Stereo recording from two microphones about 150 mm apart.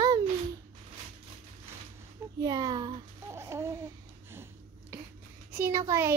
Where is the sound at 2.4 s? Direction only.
25° right (ahead or behind).